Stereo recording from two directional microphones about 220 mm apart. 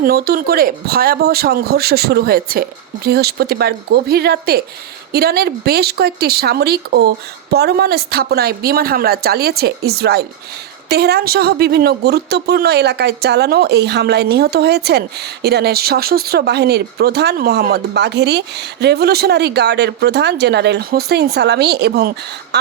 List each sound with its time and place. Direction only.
0.0 s speech: 40° right (ahead or behind)